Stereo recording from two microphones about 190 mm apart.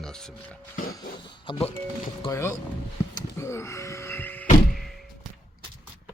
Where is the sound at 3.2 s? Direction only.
15° left (ahead or behind).